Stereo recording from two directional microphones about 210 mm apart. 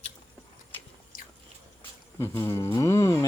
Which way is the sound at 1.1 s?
45° left (ahead or behind).